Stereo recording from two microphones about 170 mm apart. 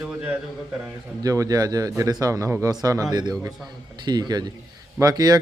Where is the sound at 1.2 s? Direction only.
20° right (ahead or behind).